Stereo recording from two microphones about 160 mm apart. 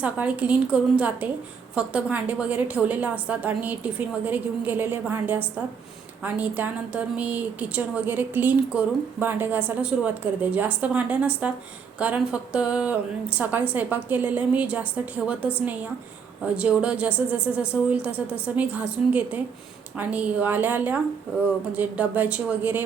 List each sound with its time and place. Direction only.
0.0 s speech: 10° right (ahead or behind)
16.6 s speech: 5° right (ahead or behind)